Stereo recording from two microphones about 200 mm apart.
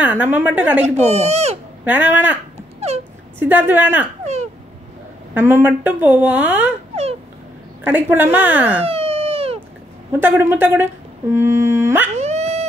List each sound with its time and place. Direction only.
0.0 s a woman's voice: 10° right (ahead or behind)
0.8 s speech: 35° right (ahead or behind)
1.9 s a woman's voice: 10° right (ahead or behind)
3.3 s a woman's voice: 10° right (ahead or behind)
4.2 s a sound: 35° right (ahead or behind)
5.3 s a woman's voice: 10° right (ahead or behind)
7.8 s a woman's voice: 10° right (ahead or behind)
8.8 s a sound: 30° right (ahead or behind)
10.2 s a woman's voice: 10° right (ahead or behind)
12.2 s dog: 35° right (ahead or behind)